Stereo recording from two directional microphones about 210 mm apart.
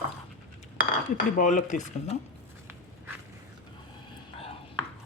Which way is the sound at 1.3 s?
35° left (ahead or behind).